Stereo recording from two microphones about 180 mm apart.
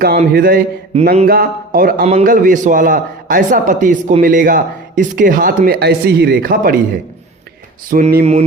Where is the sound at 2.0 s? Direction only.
40° right (ahead or behind).